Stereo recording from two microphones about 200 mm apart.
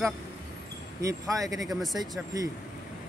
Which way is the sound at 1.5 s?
Centre (ahead or behind).